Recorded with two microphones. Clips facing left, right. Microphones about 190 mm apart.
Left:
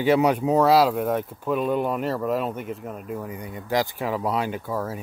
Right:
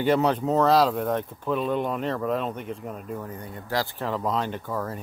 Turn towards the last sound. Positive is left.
turn(degrees=5)  # may be behind; listen again after turning